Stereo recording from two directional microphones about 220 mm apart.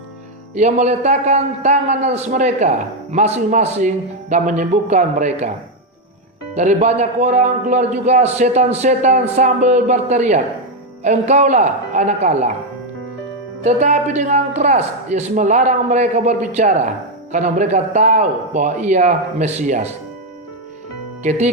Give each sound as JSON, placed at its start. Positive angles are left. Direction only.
{"t": 0.5, "sound": "a man's voice", "side_deg": -30}
{"t": 6.5, "sound": "a man's voice", "side_deg": -30}
{"t": 13.7, "sound": "a man's voice", "side_deg": -35}
{"t": 21.2, "sound": "a man's voice", "side_deg": -30}